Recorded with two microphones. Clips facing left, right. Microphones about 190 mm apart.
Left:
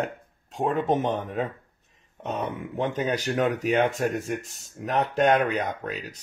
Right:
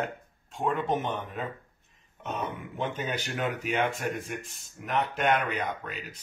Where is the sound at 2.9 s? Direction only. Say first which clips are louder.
Left 7 dB; 40° left (ahead or behind).